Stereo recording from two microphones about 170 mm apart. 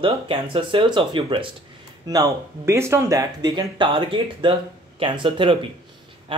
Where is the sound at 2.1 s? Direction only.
20° right (ahead or behind).